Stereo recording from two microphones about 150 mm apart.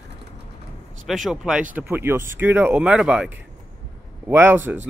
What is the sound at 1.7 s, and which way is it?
Speech, 15° right (ahead or behind).